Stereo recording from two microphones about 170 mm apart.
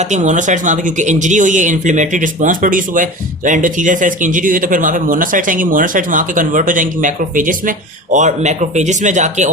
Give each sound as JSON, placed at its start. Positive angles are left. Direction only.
{"t": 0.0, "sound": "speech", "side_deg": -45}